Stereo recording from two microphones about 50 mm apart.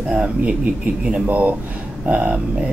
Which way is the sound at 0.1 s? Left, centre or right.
Centre.